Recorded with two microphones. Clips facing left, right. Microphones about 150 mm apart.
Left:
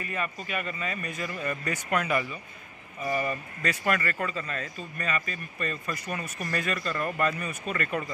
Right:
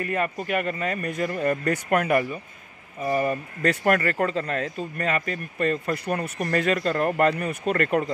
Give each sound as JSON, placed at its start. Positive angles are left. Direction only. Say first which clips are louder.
{"t": 0.0, "sound": "a man's voice", "louder": "right 7 dB", "side_deg": -60}
{"t": 3.0, "sound": "speech", "louder": "right 5 dB", "side_deg": -40}
{"t": 3.6, "sound": "speech", "louder": "right 7 dB", "side_deg": -55}